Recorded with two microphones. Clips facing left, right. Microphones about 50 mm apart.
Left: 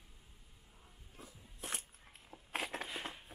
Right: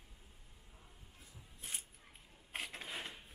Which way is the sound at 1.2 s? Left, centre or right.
Left.